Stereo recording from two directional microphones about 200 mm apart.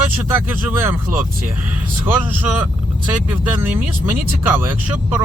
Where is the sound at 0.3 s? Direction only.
10° right (ahead or behind).